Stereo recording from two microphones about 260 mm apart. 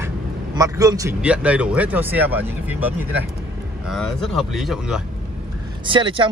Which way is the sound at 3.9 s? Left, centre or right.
Centre.